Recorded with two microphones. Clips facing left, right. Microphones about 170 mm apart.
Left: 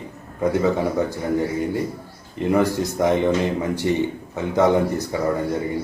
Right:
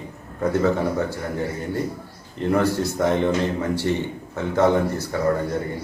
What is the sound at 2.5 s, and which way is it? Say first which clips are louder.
Speech: left 1 dB; 15° left (ahead or behind).